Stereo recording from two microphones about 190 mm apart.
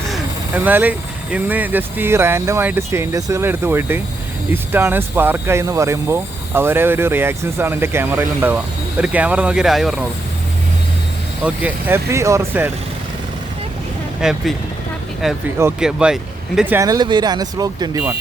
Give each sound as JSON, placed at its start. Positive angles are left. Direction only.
{"t": 0.1, "sound": "speech", "side_deg": -10}
{"t": 11.4, "sound": "speech", "side_deg": -10}
{"t": 14.2, "sound": "speech", "side_deg": -5}
{"t": 15.8, "sound": "speech", "side_deg": -5}